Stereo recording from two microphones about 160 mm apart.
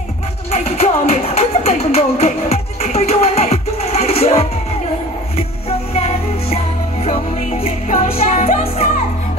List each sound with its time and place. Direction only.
0.5 s music: 40° left (ahead or behind)
5.7 s music: 40° left (ahead or behind)